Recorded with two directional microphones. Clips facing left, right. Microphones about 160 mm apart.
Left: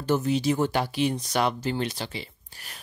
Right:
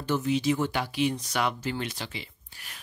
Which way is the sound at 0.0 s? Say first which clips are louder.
Left 2 dB; 40° left (ahead or behind).